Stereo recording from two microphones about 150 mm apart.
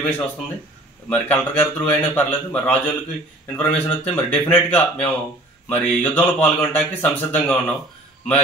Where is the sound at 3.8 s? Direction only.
10° left (ahead or behind).